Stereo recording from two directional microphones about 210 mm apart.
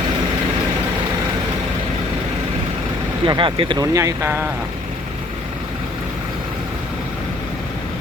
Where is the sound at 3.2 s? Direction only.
25° right (ahead or behind).